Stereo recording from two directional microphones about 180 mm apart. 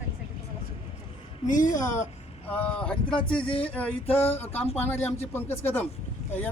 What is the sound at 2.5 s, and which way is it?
Speech, 5° left (ahead or behind).